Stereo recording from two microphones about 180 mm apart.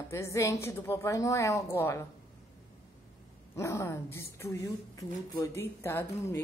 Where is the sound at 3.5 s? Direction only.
15° left (ahead or behind).